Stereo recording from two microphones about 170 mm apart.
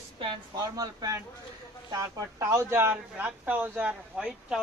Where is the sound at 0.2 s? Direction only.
25° right (ahead or behind).